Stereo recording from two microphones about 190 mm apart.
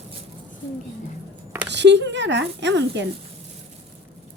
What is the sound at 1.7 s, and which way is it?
Speech, 65° right (ahead or behind).